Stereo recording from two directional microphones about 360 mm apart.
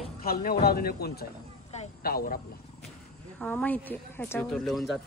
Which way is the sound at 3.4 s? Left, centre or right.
Centre.